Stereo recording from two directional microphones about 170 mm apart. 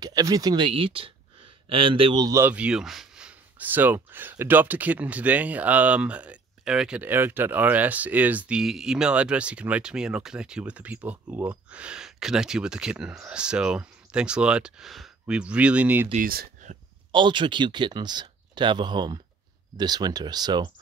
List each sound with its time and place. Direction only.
0.0 s speech: 20° right (ahead or behind)
16.1 s speech: 55° right (ahead or behind)
17.1 s speech: 30° right (ahead or behind)